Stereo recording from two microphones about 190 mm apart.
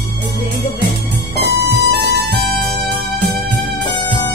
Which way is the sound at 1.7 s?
60° right (ahead or behind).